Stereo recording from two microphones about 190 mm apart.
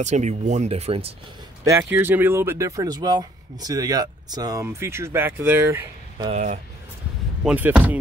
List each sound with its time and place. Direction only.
0.0 s speech: 40° right (ahead or behind)
1.6 s speech: 15° right (ahead or behind)
6.3 s speech: 40° right (ahead or behind)
7.4 s speech: 5° right (ahead or behind)